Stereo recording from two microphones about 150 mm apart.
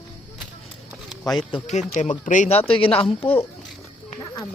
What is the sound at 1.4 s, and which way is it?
Speech, 35° left (ahead or behind).